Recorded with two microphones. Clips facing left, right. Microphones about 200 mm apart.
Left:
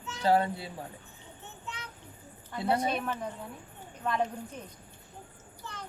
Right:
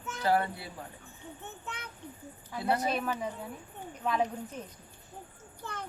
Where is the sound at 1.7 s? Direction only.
55° right (ahead or behind).